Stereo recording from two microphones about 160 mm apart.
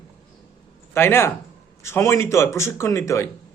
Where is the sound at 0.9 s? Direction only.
15° left (ahead or behind).